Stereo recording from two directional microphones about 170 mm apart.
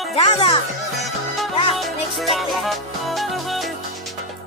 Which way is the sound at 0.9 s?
Centre (ahead or behind).